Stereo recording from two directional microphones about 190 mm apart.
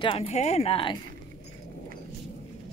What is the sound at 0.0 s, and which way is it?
Speech, 30° left (ahead or behind).